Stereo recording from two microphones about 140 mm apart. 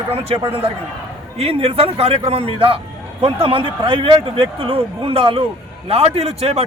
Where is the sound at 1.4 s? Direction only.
45° right (ahead or behind).